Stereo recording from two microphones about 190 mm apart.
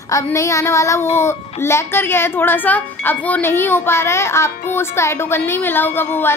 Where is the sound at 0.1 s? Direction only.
15° left (ahead or behind).